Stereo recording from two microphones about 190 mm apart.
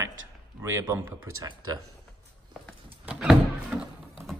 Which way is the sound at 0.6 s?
15° right (ahead or behind).